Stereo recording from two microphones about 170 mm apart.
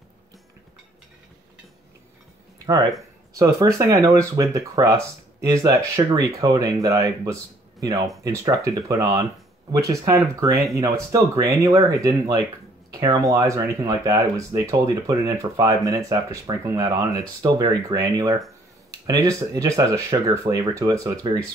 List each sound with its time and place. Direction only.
3.3 s speech: 15° right (ahead or behind)